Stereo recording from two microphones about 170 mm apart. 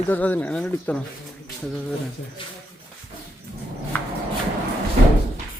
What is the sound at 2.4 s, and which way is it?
Speech, 30° left (ahead or behind).